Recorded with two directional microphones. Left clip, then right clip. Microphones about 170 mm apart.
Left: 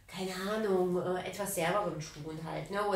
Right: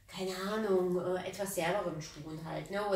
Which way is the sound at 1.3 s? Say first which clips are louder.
Left 2 dB; 20° left (ahead or behind).